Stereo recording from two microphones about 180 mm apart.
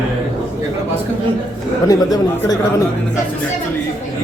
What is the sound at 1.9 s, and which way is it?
Speech, 20° left (ahead or behind).